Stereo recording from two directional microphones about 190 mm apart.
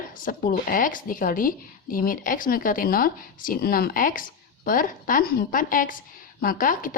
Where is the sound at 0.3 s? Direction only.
45° left (ahead or behind).